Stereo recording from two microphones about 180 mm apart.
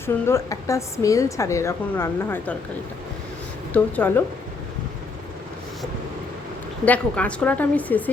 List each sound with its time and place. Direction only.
0.0 s a woman's voice: 15° left (ahead or behind)
3.7 s a woman's voice: 10° left (ahead or behind)
6.8 s a woman's voice: 10° left (ahead or behind)